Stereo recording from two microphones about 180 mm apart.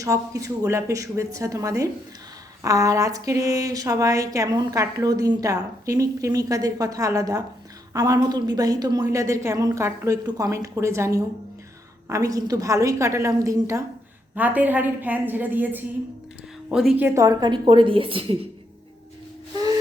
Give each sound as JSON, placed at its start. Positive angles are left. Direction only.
{"t": 0.0, "sound": "a woman's voice", "side_deg": -20}
{"t": 17.0, "sound": "speech", "side_deg": -15}